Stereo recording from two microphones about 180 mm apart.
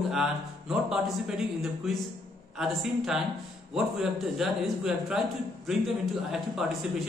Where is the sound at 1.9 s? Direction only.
Centre (ahead or behind).